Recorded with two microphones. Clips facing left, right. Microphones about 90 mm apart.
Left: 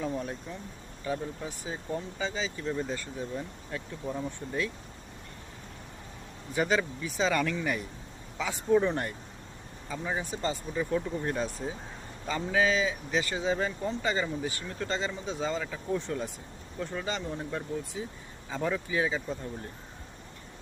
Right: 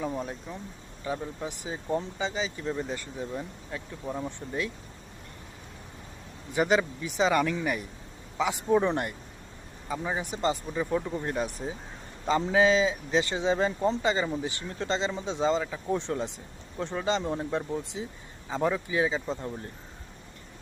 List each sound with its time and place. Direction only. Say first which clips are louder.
1.0 s speech: right 1 dB; 20° right (ahead or behind)
6.5 s speech: right 3 dB; 20° right (ahead or behind)